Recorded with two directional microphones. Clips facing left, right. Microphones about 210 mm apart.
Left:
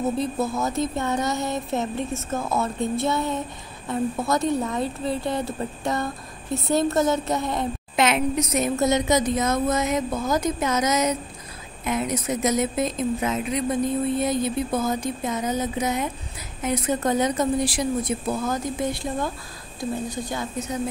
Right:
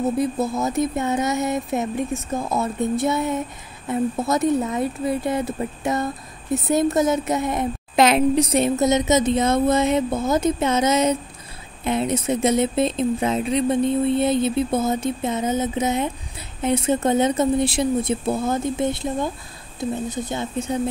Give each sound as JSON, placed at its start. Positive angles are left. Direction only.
{"t": 0.7, "sound": "speech", "side_deg": -20}
{"t": 3.9, "sound": "speech", "side_deg": -20}
{"t": 7.9, "sound": "a woman's voice", "side_deg": -35}
{"t": 8.7, "sound": "speech", "side_deg": -20}